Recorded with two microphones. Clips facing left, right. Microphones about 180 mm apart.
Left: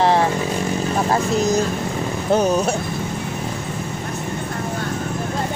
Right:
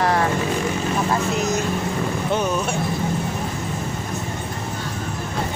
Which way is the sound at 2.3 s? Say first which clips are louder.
Left 7 dB; 40° left (ahead or behind).